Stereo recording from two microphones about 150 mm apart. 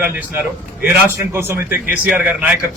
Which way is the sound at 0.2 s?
15° right (ahead or behind).